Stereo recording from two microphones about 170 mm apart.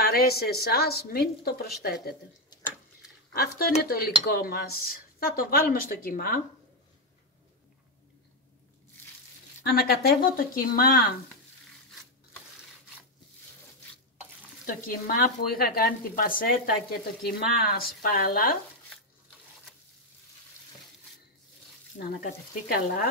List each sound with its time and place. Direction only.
0.0 s a woman's voice: 65° left (ahead or behind)
3.3 s speech: 65° left (ahead or behind)
9.6 s speech: 65° left (ahead or behind)
14.7 s speech: 60° left (ahead or behind)
21.9 s speech: 55° left (ahead or behind)